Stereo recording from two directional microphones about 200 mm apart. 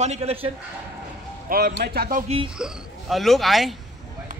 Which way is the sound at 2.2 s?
30° right (ahead or behind).